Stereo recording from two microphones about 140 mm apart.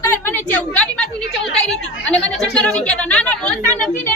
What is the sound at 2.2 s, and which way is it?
Speech, 5° left (ahead or behind).